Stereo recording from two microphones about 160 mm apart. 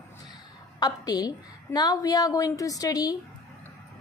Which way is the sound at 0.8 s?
25° left (ahead or behind).